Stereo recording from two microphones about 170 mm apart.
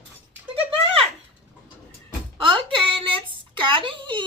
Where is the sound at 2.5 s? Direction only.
30° right (ahead or behind).